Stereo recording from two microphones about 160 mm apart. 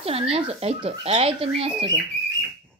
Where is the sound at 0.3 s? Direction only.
40° right (ahead or behind).